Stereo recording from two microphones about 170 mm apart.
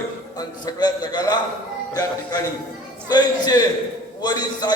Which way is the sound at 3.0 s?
25° left (ahead or behind).